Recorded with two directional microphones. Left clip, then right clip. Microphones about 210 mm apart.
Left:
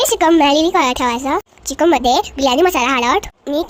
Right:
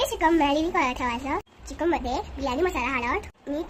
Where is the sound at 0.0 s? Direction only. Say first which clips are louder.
Left 10 dB; 35° left (ahead or behind).